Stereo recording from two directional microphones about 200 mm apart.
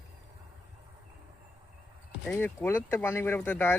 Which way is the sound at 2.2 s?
10° left (ahead or behind).